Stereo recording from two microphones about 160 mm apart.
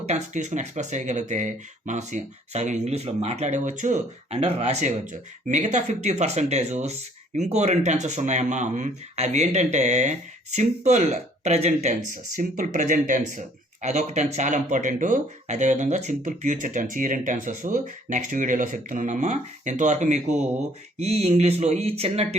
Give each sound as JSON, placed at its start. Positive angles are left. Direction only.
{"t": 0.0, "sound": "speech", "side_deg": -45}